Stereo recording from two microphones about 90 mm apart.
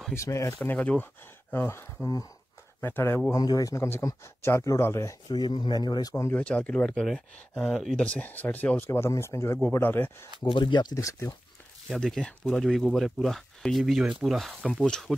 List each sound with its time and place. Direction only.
0.1 s speech: 35° left (ahead or behind)
0.7 s speech: 15° left (ahead or behind)
3.3 s speech: 45° left (ahead or behind)
5.3 s speech: 55° left (ahead or behind)
6.3 s speech: 15° left (ahead or behind)
10.4 s speech: 60° left (ahead or behind)
11.0 s speech: 35° left (ahead or behind)
11.9 s speech: 5° left (ahead or behind)